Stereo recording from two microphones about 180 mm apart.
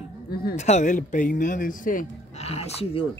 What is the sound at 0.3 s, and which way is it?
Speech, 55° left (ahead or behind).